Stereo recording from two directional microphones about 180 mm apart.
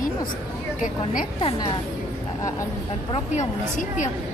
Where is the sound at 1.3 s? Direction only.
25° left (ahead or behind).